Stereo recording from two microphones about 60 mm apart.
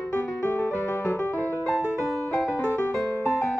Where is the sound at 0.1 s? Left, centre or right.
Left.